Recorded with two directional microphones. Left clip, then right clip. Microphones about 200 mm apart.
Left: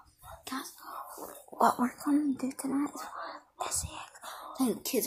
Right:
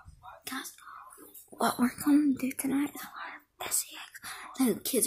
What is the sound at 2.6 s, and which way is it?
Whispering, 20° right (ahead or behind).